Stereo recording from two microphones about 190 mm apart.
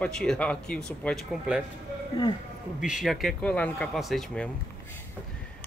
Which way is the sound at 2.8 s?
Centre (ahead or behind).